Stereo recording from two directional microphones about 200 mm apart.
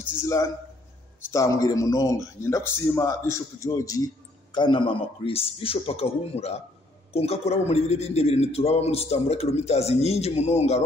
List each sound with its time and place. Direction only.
0.2 s a man's voice: 15° left (ahead or behind); by 10.8 s 35° left (ahead or behind)